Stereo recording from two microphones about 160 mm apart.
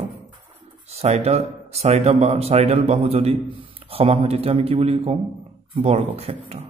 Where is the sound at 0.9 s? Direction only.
40° right (ahead or behind).